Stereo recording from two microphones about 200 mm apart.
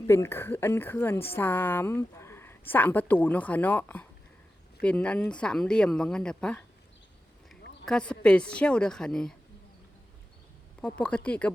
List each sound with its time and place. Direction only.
0.1 s speech: 10° left (ahead or behind)
7.9 s speech: 5° left (ahead or behind)
10.8 s speech: 5° left (ahead or behind)